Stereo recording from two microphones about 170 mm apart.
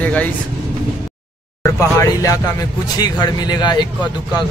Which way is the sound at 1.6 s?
15° left (ahead or behind).